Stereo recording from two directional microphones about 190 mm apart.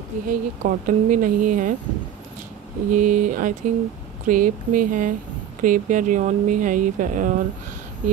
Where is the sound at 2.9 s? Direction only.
45° right (ahead or behind).